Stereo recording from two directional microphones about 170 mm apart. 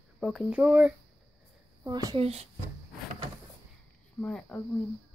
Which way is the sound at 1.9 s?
20° right (ahead or behind).